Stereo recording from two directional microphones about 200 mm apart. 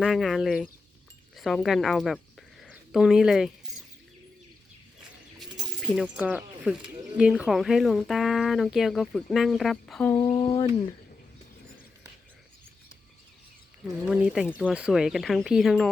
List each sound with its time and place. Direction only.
0.0 s speech: centre (ahead or behind)
5.8 s speech: 5° right (ahead or behind)
10.2 s speech: 25° left (ahead or behind)
13.8 s speech: 5° right (ahead or behind)